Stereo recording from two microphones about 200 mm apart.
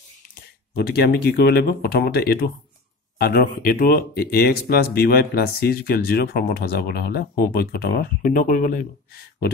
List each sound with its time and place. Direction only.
0.3 s speech: 50° left (ahead or behind)